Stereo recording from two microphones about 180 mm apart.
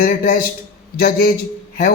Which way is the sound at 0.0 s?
55° left (ahead or behind).